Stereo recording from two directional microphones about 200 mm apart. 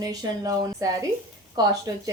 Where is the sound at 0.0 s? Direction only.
20° right (ahead or behind).